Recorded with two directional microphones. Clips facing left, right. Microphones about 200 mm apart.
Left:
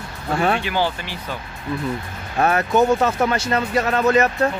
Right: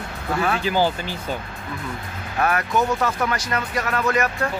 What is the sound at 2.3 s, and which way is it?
Speech, 25° left (ahead or behind).